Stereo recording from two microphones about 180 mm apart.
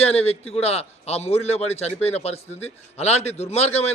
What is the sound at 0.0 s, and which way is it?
A man's voice, 35° left (ahead or behind).